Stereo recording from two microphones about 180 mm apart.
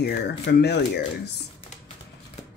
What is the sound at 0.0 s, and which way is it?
Speech, 65° left (ahead or behind).